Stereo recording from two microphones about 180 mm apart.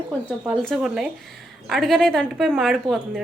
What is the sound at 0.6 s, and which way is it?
A woman's voice, centre (ahead or behind).